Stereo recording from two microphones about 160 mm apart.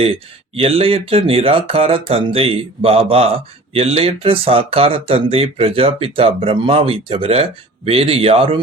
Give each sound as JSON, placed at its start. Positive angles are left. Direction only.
{"t": 0.0, "sound": "speech", "side_deg": -35}